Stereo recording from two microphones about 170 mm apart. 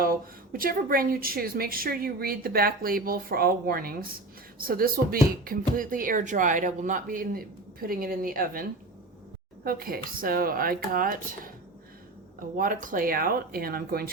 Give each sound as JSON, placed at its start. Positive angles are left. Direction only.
{"t": 0.5, "sound": "speech", "side_deg": -60}
{"t": 9.6, "sound": "speech", "side_deg": -60}
{"t": 12.5, "sound": "speech", "side_deg": -55}